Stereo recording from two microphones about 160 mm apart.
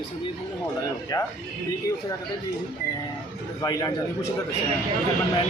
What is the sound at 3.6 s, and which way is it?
Speech, 20° left (ahead or behind).